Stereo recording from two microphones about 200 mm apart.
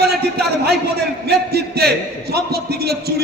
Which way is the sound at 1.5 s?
55° right (ahead or behind).